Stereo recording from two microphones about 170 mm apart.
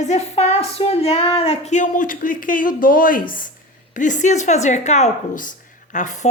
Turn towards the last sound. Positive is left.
turn(degrees=45)  # may be behind; listen again after turning